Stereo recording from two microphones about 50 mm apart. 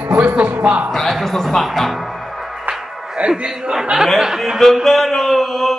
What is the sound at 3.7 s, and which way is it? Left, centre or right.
Speech, centre.